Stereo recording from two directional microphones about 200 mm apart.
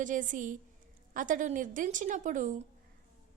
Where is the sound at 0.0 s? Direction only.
40° right (ahead or behind).